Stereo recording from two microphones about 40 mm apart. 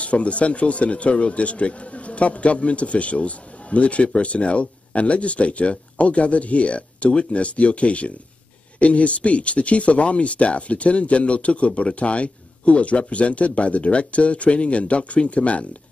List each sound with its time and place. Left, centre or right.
0.0 s a man's voice: left